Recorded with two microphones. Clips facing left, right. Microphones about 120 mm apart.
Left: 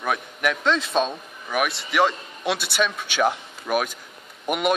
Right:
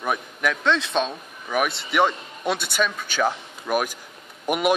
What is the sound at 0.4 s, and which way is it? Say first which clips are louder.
A man's voice: even; 5° left (ahead or behind).